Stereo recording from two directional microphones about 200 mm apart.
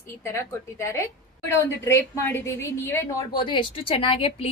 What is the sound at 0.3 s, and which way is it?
A woman's voice, 15° left (ahead or behind).